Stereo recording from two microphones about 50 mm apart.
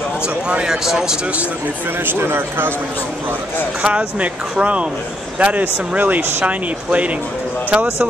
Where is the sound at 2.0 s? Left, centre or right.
Right.